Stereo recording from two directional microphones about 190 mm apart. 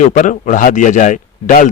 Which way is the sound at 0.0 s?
40° left (ahead or behind).